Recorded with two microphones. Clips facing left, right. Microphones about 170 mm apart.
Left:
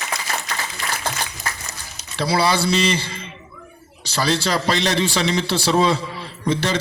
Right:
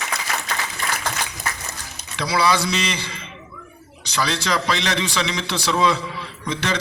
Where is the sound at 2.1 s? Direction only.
30° left (ahead or behind).